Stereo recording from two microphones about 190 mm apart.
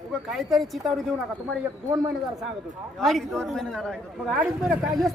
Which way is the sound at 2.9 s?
Centre (ahead or behind).